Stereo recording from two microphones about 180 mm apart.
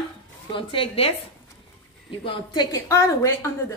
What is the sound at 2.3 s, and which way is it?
A woman's voice, 20° left (ahead or behind).